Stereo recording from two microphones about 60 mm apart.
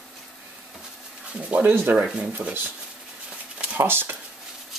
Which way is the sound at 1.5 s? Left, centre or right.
Right.